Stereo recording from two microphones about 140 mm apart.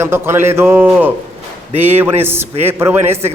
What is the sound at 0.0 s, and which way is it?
A man's voice, 15° right (ahead or behind).